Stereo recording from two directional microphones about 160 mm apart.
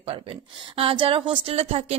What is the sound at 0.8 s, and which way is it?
Speech, 35° right (ahead or behind).